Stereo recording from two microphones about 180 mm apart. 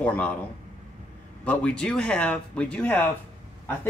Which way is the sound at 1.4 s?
5° left (ahead or behind).